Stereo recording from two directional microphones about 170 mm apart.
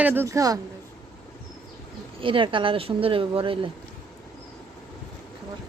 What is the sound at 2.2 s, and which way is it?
Speech, 30° right (ahead or behind).